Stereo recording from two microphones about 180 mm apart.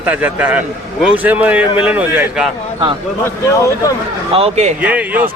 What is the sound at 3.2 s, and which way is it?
Speech, 15° left (ahead or behind).